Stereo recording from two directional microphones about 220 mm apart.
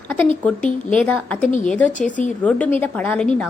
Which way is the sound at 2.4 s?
5° left (ahead or behind).